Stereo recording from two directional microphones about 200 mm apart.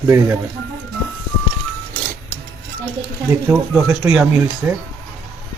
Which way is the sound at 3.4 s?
Centre (ahead or behind).